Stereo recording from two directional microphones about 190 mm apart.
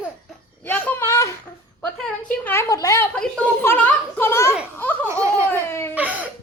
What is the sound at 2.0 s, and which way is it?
Speech, 5° left (ahead or behind).